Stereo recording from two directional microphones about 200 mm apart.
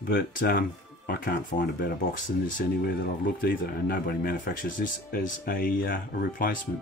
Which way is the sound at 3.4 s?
45° left (ahead or behind).